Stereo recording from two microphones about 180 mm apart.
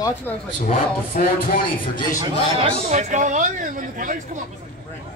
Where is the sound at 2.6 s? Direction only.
40° right (ahead or behind).